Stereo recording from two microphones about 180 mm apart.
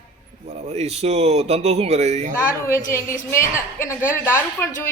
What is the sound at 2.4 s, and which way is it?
A woman's voice, 15° left (ahead or behind).